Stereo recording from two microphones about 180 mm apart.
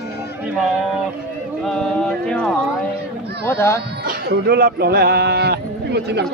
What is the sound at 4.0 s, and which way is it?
Speech, 60° right (ahead or behind).